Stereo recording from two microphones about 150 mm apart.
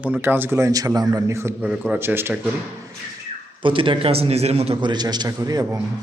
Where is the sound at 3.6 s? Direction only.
35° right (ahead or behind).